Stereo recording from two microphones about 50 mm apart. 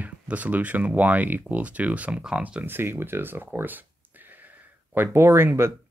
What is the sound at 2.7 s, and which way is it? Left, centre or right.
Speech, right.